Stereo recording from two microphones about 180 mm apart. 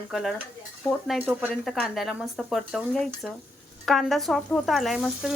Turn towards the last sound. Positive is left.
turn(degrees=0)  # may be behind; listen again after turning